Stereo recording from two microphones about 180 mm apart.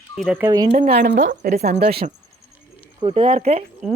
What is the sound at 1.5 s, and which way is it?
Speech, 55° right (ahead or behind).